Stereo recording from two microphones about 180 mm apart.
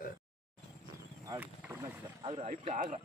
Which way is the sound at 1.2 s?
20° right (ahead or behind).